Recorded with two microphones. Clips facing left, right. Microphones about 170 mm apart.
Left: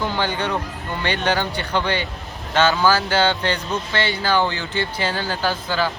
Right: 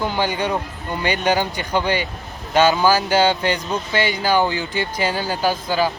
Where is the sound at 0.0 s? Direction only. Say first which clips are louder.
Right 2 dB; 10° right (ahead or behind).